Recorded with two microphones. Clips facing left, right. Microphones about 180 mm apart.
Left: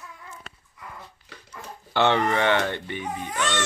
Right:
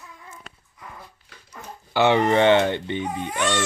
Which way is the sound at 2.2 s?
25° right (ahead or behind).